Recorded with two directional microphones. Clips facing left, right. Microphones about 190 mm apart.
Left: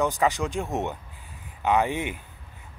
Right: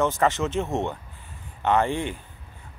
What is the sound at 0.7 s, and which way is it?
Speech, 20° left (ahead or behind).